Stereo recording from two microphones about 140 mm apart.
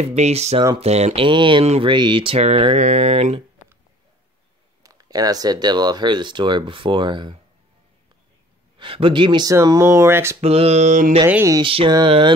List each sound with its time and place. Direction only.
0.0 s mantra: 50° right (ahead or behind)
1.2 s speech: 35° right (ahead or behind)
2.4 s mantra: 45° right (ahead or behind)
4.8 s speech: 25° right (ahead or behind)
8.7 s speech: 40° right (ahead or behind); by 10.3 s 20° right (ahead or behind)
10.4 s mantra: 45° right (ahead or behind)
11.2 s speech: 10° right (ahead or behind)
11.6 s speech: 40° right (ahead or behind)